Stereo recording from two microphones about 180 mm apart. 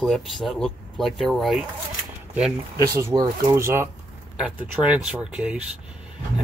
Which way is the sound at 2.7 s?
20° right (ahead or behind).